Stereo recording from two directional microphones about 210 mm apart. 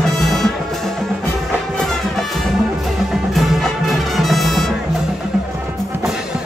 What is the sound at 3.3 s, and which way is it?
Music, centre (ahead or behind).